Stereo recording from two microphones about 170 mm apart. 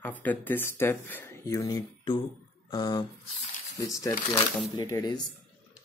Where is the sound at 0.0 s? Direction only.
10° left (ahead or behind).